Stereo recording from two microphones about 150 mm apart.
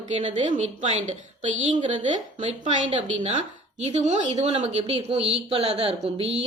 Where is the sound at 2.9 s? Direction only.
35° right (ahead or behind).